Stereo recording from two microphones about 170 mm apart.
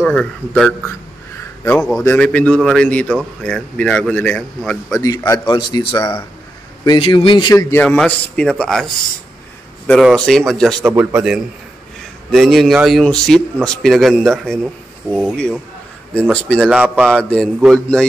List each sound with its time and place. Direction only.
0.0 s a man's voice: 5° left (ahead or behind)
4.9 s a man's voice: 20° left (ahead or behind)
5.5 s speech: 25° left (ahead or behind)
7.7 s a man's voice: 10° left (ahead or behind)
10.8 s a man's voice: 10° right (ahead or behind)
16.1 s a man's voice: 5° left (ahead or behind)
16.6 s a man's voice: 5° right (ahead or behind)